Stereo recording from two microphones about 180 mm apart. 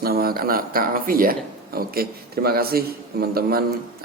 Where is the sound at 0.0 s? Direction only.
55° right (ahead or behind).